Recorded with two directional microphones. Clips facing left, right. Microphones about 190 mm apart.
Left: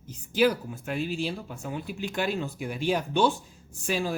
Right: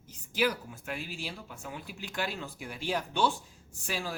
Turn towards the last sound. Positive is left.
turn(degrees=20)  # may be behind; listen again after turning